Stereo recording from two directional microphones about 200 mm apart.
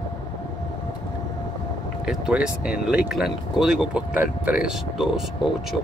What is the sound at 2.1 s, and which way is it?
Speech, 5° right (ahead or behind).